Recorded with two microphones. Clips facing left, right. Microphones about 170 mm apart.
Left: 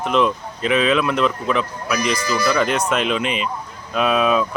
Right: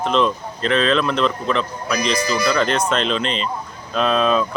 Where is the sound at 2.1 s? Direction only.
15° right (ahead or behind).